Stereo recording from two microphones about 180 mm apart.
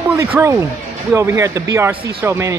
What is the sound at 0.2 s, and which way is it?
Speech, 15° right (ahead or behind).